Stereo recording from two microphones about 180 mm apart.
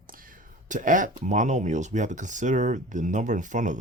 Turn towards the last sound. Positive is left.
turn(degrees=-45)  # may be behind; listen again after turning